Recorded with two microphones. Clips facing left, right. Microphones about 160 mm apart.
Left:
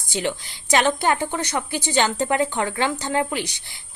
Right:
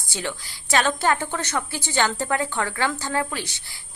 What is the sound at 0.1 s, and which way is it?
A woman's voice, 20° left (ahead or behind).